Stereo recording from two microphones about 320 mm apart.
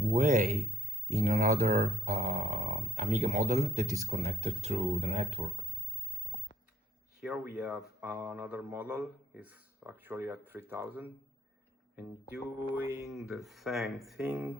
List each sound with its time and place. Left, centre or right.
0.0 s a man's voice: right
6.3 s a sound: centre
7.2 s speech: centre
12.7 s speech: centre